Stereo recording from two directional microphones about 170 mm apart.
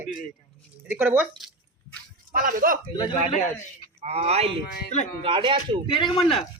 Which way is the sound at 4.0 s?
40° right (ahead or behind).